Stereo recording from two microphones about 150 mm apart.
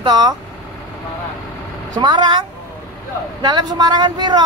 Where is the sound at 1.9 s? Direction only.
30° right (ahead or behind).